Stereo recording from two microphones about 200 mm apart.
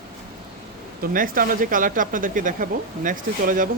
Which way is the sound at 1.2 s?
45° right (ahead or behind).